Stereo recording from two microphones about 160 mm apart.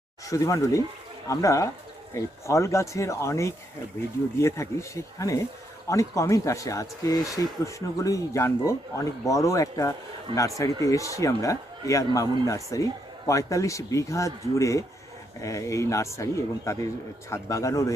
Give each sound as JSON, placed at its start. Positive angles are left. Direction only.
{"t": 0.3, "sound": "speech", "side_deg": 20}